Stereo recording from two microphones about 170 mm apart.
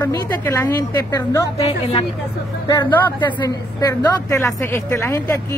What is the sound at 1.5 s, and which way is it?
Speech, 35° left (ahead or behind).